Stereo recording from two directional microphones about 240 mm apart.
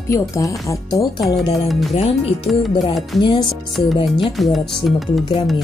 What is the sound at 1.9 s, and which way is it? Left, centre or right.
Speech, left.